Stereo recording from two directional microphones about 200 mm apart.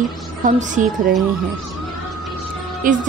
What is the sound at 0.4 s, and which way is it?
Speech, 40° right (ahead or behind).